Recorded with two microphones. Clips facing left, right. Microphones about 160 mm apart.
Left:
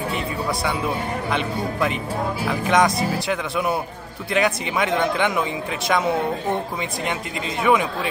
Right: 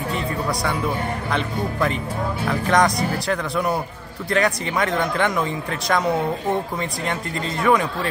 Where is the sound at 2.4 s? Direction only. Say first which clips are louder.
Even; 5° left (ahead or behind).